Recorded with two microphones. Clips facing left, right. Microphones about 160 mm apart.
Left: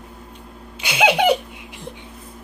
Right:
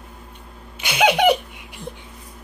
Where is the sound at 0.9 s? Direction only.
25° left (ahead or behind).